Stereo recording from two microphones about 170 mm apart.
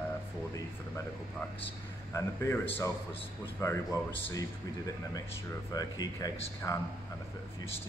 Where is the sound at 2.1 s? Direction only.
15° left (ahead or behind).